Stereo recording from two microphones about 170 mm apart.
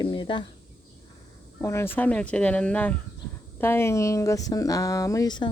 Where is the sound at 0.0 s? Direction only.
25° left (ahead or behind).